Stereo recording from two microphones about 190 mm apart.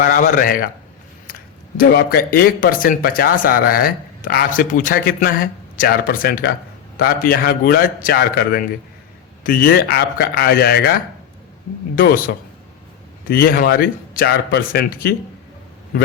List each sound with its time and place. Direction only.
0.0 s speech: 45° left (ahead or behind)